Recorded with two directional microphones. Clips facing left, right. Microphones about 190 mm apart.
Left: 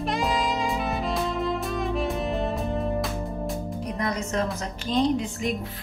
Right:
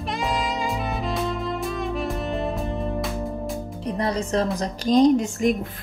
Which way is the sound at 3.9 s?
30° right (ahead or behind).